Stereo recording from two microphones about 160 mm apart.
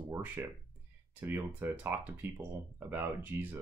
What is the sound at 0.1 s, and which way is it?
Speech, 15° right (ahead or behind).